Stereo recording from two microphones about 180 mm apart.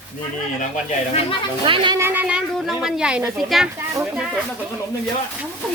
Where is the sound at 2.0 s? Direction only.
10° right (ahead or behind).